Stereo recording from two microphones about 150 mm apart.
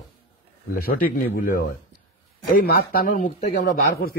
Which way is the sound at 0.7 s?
75° left (ahead or behind).